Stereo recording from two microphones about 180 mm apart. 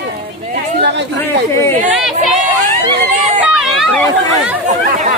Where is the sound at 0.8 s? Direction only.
70° right (ahead or behind).